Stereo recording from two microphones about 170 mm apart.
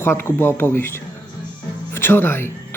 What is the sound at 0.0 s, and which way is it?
Speech, 15° left (ahead or behind).